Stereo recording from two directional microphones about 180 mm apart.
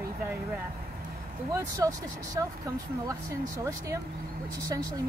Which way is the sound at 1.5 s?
20° right (ahead or behind).